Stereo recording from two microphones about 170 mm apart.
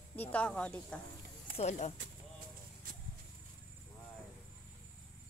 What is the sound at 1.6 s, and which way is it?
Speech, 40° left (ahead or behind).